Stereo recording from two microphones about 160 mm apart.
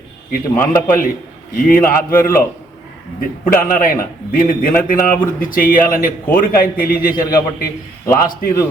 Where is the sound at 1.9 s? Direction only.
65° left (ahead or behind).